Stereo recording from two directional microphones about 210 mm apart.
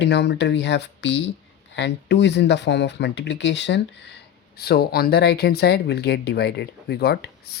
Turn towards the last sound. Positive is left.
turn(degrees=50)  # may be behind; listen again after turning